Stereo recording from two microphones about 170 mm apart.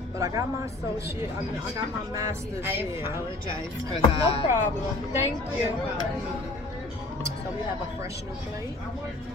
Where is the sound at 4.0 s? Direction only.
35° left (ahead or behind).